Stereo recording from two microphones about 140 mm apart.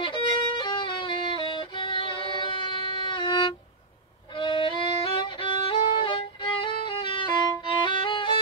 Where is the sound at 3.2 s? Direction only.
35° left (ahead or behind).